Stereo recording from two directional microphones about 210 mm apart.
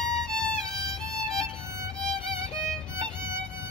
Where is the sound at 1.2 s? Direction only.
5° left (ahead or behind).